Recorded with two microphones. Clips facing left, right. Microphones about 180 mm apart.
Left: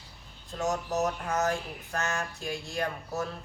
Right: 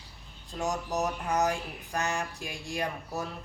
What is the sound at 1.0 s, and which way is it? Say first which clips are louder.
Speech: right 2 dB; 15° right (ahead or behind).